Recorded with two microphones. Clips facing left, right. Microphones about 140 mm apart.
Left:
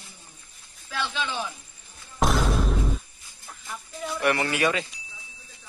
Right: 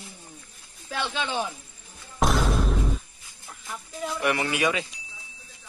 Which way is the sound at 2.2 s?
Centre (ahead or behind).